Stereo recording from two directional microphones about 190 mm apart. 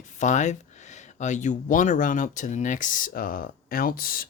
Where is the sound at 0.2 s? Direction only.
40° left (ahead or behind).